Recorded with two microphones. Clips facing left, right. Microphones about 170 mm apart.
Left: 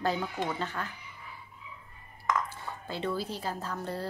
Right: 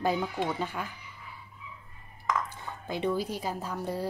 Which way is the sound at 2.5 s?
15° right (ahead or behind).